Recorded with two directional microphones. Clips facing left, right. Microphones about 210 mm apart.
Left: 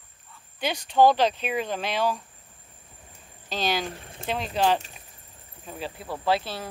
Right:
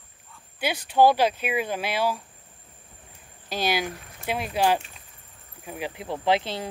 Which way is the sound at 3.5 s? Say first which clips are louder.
Right 1 dB; 10° right (ahead or behind).